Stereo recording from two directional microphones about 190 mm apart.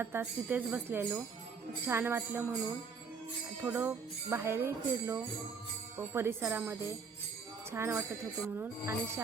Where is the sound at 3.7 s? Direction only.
10° right (ahead or behind).